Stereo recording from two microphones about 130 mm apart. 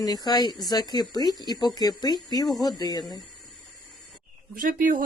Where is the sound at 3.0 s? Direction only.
Centre (ahead or behind).